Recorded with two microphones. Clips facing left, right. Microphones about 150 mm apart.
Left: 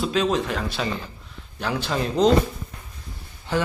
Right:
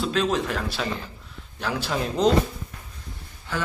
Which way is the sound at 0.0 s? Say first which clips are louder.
Left 2 dB; centre (ahead or behind).